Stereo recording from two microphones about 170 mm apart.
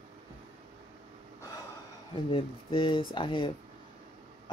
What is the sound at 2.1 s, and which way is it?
Speech, 30° left (ahead or behind).